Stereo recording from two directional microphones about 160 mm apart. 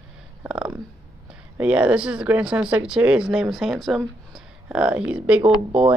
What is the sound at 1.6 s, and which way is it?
Speech, 10° right (ahead or behind).